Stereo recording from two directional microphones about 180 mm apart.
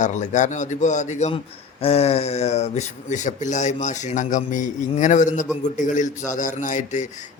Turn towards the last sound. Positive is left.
turn(degrees=45)  # may be behind; listen again after turning